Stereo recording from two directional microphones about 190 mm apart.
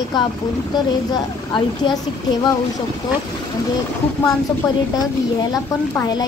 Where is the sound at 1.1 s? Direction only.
25° left (ahead or behind).